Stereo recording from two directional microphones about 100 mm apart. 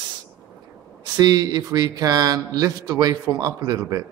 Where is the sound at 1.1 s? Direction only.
40° right (ahead or behind).